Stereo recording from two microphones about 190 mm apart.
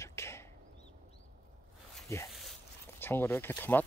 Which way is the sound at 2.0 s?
15° left (ahead or behind).